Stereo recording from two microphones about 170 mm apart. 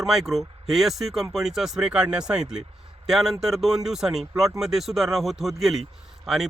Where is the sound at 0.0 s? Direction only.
Centre (ahead or behind).